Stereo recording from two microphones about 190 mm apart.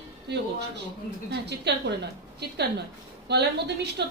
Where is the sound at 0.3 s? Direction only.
65° right (ahead or behind).